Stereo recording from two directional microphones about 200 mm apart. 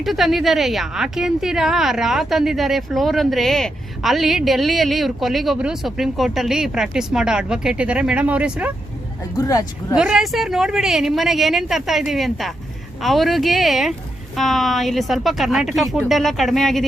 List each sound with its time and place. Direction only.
0.0 s speech: centre (ahead or behind)
9.4 s speech: 20° left (ahead or behind)
9.9 s speech: 5° right (ahead or behind)